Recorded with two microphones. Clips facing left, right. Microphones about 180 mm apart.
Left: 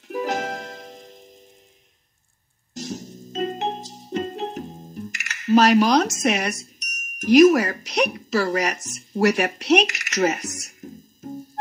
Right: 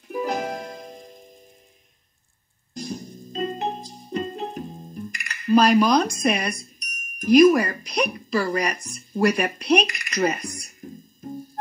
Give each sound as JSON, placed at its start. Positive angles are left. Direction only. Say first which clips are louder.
{"t": 0.3, "sound": "music", "louder": "even", "side_deg": 80}
{"t": 2.7, "sound": "music", "louder": "even", "side_deg": 85}
{"t": 5.1, "sound": "speech", "louder": "left 1 dB", "side_deg": 80}